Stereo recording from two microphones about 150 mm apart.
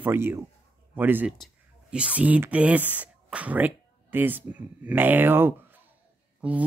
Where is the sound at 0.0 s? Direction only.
15° right (ahead or behind).